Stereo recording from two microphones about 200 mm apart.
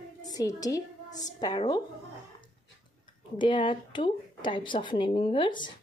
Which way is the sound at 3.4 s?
25° left (ahead or behind).